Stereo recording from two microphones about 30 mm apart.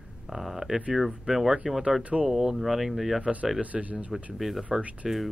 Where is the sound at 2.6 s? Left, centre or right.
Centre.